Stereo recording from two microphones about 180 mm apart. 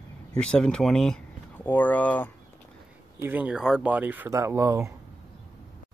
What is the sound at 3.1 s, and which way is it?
Speech, 10° right (ahead or behind).